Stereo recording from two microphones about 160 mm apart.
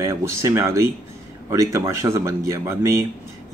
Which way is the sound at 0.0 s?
20° right (ahead or behind).